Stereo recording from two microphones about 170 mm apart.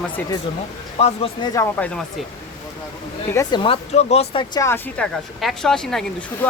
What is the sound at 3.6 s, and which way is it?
Speech, 35° left (ahead or behind).